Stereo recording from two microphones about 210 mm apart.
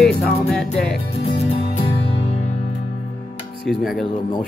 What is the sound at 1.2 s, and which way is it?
Music, 30° left (ahead or behind).